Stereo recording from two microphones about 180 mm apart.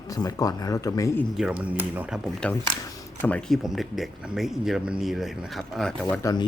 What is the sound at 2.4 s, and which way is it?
Speech, 5° left (ahead or behind).